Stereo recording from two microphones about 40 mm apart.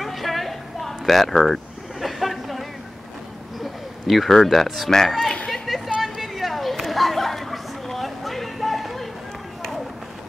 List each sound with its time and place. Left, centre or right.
0.0 s sheep: centre
4.1 s speech: centre
5.7 s a sound: centre
6.0 s chatter: centre